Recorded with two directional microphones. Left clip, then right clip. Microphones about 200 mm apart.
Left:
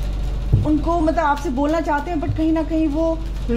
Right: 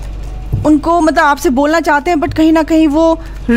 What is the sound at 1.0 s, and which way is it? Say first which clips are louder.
Speech: right 9 dB; 55° right (ahead or behind).